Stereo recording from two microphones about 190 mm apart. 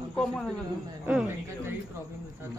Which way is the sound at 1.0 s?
10° right (ahead or behind).